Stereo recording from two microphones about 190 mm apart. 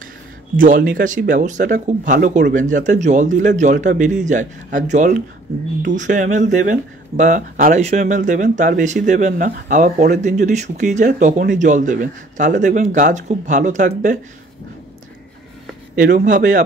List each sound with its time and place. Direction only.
0.6 s speech: 45° right (ahead or behind)
16.0 s speech: 45° right (ahead or behind)